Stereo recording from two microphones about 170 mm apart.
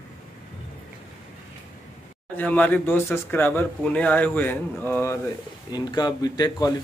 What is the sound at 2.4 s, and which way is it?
Speech, 10° left (ahead or behind).